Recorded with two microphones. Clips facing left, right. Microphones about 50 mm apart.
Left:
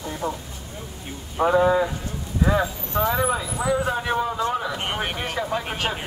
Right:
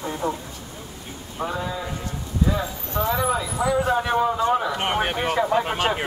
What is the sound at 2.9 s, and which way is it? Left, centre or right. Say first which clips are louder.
Speech: left 1 dB; centre.